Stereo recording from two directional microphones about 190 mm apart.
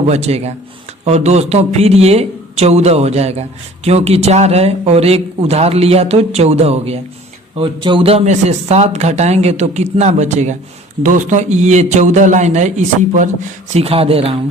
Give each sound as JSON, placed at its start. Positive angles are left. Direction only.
{"t": 0.1, "sound": "a man's voice", "side_deg": -35}